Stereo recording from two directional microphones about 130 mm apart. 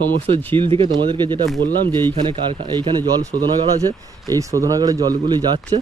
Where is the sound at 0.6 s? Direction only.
40° right (ahead or behind).